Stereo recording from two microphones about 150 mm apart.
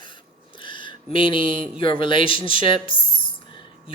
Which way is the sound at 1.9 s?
35° left (ahead or behind).